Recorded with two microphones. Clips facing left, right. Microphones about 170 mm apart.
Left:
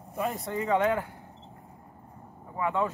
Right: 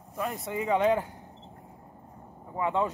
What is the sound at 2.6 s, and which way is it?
Speech, 20° right (ahead or behind).